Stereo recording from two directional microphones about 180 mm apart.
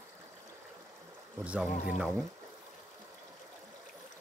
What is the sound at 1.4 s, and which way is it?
Speech, 5° right (ahead or behind).